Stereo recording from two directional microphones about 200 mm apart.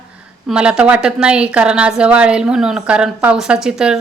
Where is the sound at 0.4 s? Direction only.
5° right (ahead or behind).